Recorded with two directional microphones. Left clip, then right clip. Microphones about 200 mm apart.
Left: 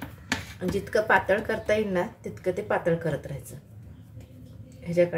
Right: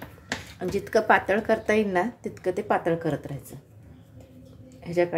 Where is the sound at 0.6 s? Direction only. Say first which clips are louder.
Right 3 dB; 35° right (ahead or behind).